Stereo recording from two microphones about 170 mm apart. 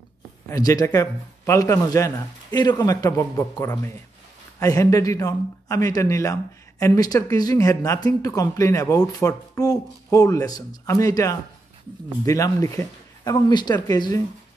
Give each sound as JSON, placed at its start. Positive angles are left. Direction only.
{"t": 0.5, "sound": "speech", "side_deg": 20}